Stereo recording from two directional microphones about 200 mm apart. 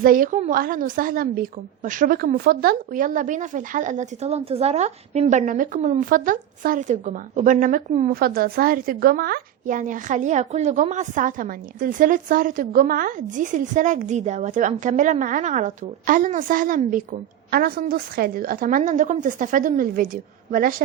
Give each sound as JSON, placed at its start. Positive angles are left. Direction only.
{"t": 0.0, "sound": "a woman's voice", "side_deg": -45}